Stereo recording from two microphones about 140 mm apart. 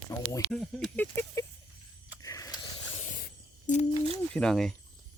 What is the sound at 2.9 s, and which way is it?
Spray, 65° left (ahead or behind).